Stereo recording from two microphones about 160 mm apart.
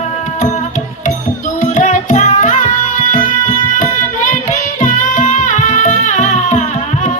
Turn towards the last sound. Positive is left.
turn(degrees=50)  # may be behind; listen again after turning